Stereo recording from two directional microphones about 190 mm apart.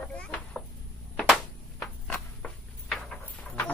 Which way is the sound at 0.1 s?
5° left (ahead or behind).